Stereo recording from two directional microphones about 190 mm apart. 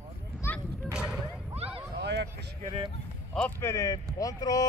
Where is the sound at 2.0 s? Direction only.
65° right (ahead or behind).